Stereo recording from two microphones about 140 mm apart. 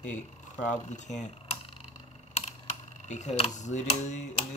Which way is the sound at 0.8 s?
55° left (ahead or behind).